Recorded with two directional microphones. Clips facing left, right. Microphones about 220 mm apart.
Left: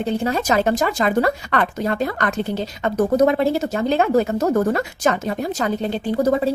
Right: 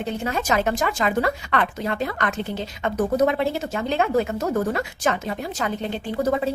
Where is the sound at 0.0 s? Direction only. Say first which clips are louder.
Left 5 dB; 35° left (ahead or behind).